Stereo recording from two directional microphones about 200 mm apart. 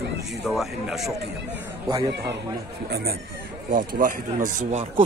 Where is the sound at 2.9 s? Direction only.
50° right (ahead or behind).